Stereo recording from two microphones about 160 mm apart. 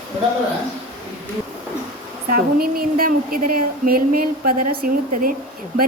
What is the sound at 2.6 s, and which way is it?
Speech, 65° right (ahead or behind).